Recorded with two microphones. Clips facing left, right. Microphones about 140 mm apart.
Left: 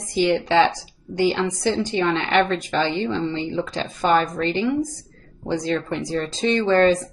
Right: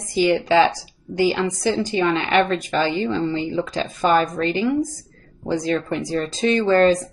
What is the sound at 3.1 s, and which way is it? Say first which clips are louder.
Speech: right 2 dB; 40° right (ahead or behind).